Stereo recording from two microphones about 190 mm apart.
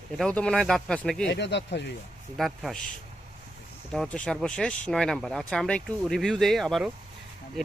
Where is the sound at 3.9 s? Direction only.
5° left (ahead or behind).